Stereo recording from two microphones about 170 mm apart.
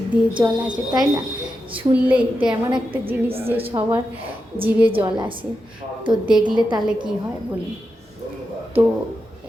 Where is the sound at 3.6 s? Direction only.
30° right (ahead or behind).